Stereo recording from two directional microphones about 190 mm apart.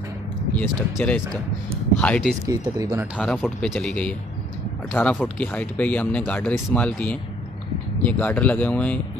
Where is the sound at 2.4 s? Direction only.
15° right (ahead or behind).